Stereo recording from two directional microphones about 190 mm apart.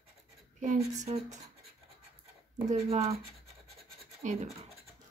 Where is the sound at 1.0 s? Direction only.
40° right (ahead or behind).